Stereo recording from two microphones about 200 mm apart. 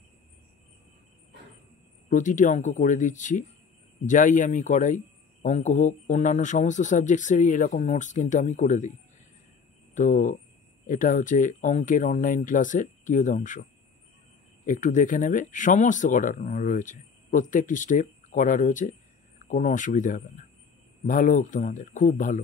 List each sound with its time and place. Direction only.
2.0 s speech: 40° left (ahead or behind)
9.9 s speech: 40° left (ahead or behind)
14.7 s speech: 40° left (ahead or behind)